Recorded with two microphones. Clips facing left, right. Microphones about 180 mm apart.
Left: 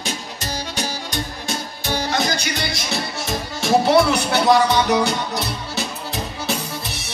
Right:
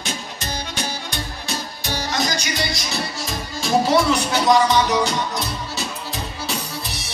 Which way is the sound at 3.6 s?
65° left (ahead or behind).